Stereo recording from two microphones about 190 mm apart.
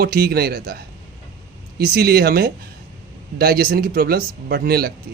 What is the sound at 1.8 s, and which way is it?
Speech, 55° right (ahead or behind).